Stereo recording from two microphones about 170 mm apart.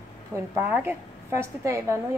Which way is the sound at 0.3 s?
15° right (ahead or behind).